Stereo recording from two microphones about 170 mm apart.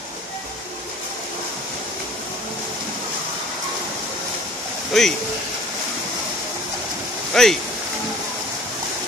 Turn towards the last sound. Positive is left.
turn(degrees=0)  # may be behind; listen again after turning